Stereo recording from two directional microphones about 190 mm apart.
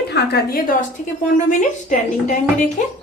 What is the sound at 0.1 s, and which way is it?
A woman's voice, 55° left (ahead or behind).